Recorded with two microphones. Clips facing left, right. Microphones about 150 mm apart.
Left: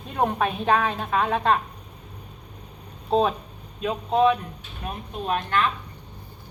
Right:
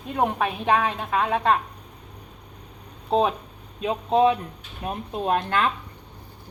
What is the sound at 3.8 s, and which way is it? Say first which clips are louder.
Speech: right 1 dB; 20° right (ahead or behind).